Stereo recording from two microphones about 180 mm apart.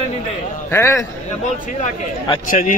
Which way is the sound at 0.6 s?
15° left (ahead or behind).